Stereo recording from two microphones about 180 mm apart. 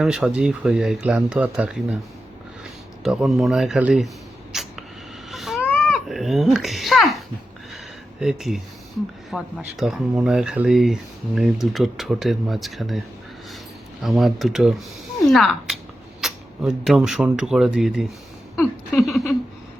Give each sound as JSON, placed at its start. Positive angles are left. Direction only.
{"t": 0.0, "sound": "speech", "side_deg": -5}
{"t": 3.0, "sound": "speech", "side_deg": 0}
{"t": 4.5, "sound": "a sound", "side_deg": -5}
{"t": 5.3, "sound": "baby cry", "side_deg": 0}
{"t": 5.6, "sound": "baby cry", "side_deg": 10}
{"t": 6.1, "sound": "speech", "side_deg": 0}
{"t": 8.2, "sound": "speech", "side_deg": 0}
{"t": 14.0, "sound": "speech", "side_deg": 0}